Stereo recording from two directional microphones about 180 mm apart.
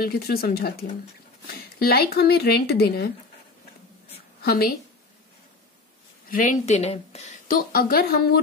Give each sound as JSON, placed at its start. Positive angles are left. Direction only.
{"t": 0.0, "sound": "speech", "side_deg": 55}
{"t": 4.4, "sound": "a woman's voice", "side_deg": 55}
{"t": 6.3, "sound": "speech", "side_deg": 45}